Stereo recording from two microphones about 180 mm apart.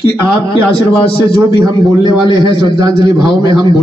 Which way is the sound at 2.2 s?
25° left (ahead or behind).